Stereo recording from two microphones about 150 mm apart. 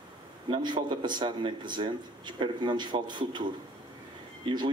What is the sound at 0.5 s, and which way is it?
Speech, 30° right (ahead or behind).